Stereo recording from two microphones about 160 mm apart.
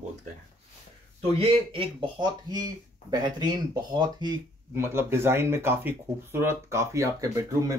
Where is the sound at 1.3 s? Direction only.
35° right (ahead or behind).